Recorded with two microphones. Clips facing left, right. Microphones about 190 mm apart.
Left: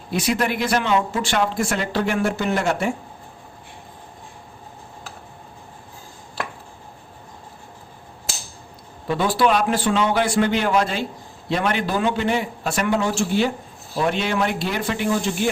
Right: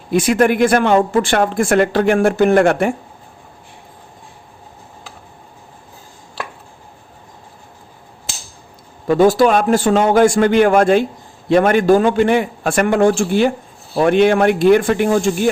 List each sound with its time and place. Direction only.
0.1 s speech: 50° right (ahead or behind)
9.0 s speech: 45° right (ahead or behind)